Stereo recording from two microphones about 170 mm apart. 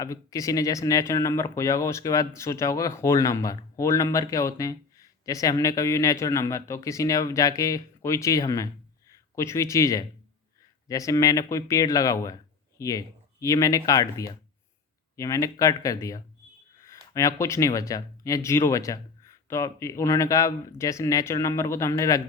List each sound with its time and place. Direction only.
0.0 s speech: 20° left (ahead or behind)